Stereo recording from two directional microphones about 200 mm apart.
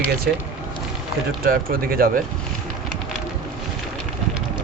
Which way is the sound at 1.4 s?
45° right (ahead or behind).